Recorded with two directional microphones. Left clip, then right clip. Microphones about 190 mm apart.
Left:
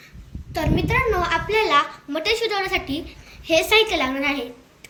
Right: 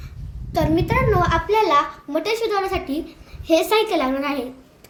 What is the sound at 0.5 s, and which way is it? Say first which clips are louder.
A child's voice: right 2 dB; 55° right (ahead or behind).